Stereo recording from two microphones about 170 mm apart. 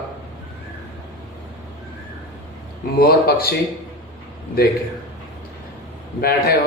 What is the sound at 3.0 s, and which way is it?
Speech, 65° left (ahead or behind).